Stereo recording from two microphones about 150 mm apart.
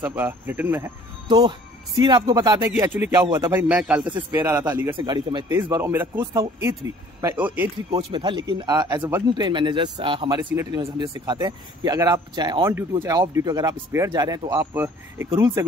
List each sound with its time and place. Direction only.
0.0 s a man's voice: 15° right (ahead or behind)
1.3 s speech: 30° right (ahead or behind)
2.7 s a man's voice: 10° right (ahead or behind)
3.1 s speech: 25° right (ahead or behind)
3.5 s a man's voice: 10° right (ahead or behind)
4.9 s speech: 30° right (ahead or behind)
5.6 s a man's voice: 15° right (ahead or behind)
7.9 s speech: 30° right (ahead or behind)